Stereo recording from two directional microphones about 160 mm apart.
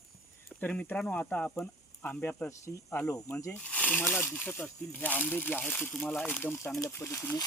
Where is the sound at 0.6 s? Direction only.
10° left (ahead or behind).